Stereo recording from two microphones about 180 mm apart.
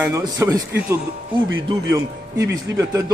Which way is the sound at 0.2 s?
20° right (ahead or behind).